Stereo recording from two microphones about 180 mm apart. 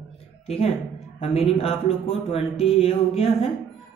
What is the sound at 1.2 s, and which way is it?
Speech, 35° left (ahead or behind).